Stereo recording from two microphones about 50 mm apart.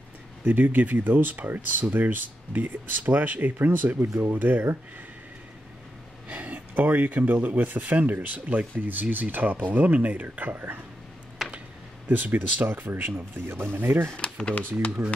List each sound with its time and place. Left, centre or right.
0.5 s speech: right
6.2 s speech: right
11.4 s computer keyboard: centre
12.1 s speech: right
14.1 s speech: centre